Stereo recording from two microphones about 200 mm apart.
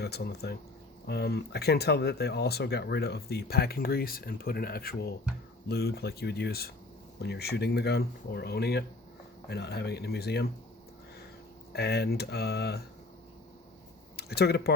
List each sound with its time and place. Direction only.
0.0 s speech: 55° left (ahead or behind)
11.7 s speech: 55° left (ahead or behind)
14.2 s speech: 55° left (ahead or behind)